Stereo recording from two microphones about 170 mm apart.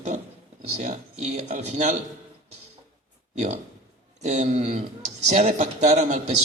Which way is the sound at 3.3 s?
40° right (ahead or behind).